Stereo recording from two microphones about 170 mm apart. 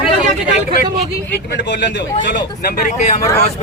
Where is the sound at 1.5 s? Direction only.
90° left.